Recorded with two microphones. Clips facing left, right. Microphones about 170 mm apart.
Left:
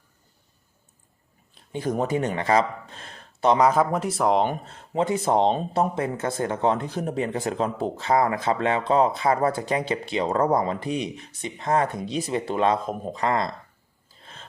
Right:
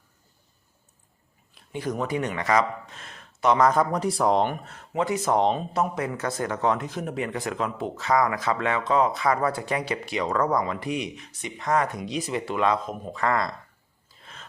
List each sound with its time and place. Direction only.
1.7 s speech: 25° left (ahead or behind)
2.0 s speech: 45° left (ahead or behind)
2.2 s speech: 30° left (ahead or behind)
3.6 s speech: 5° left (ahead or behind)
4.4 s speech: 25° left (ahead or behind)
14.2 s a sound: 30° left (ahead or behind)